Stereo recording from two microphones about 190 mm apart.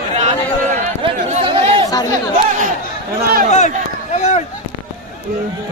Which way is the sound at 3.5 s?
35° left (ahead or behind).